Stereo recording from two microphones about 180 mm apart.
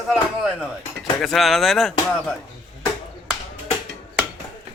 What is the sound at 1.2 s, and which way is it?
Speech, centre (ahead or behind).